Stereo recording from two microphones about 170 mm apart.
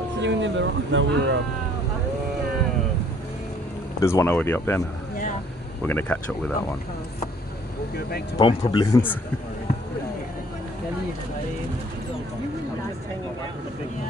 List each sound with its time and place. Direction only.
0.2 s speech: 90° right
4.0 s speech: 15° left (ahead or behind)
5.9 s speech: 10° left (ahead or behind)
8.4 s speech: 30° left (ahead or behind)
8.8 s speech: 15° left (ahead or behind)